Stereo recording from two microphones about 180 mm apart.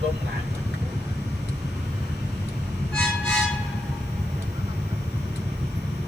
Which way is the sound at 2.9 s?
5° left (ahead or behind).